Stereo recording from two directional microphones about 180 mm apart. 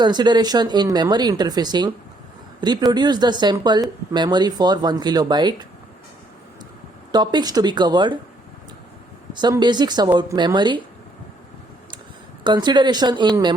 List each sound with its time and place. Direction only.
0.0 s speech: 25° right (ahead or behind)
7.1 s speech: 25° right (ahead or behind)
9.3 s speech: 25° right (ahead or behind)
12.4 s speech: 25° right (ahead or behind)